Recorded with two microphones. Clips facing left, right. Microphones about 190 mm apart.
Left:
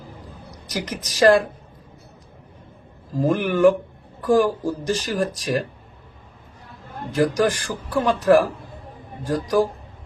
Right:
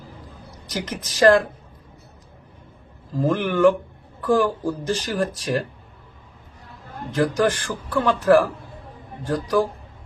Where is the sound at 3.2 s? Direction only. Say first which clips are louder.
Left 1 dB; 15° left (ahead or behind).